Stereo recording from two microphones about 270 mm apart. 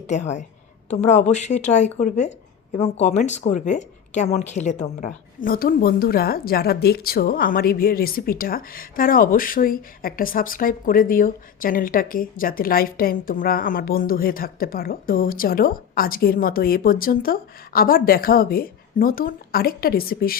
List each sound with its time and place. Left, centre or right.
0.1 s a woman's voice: left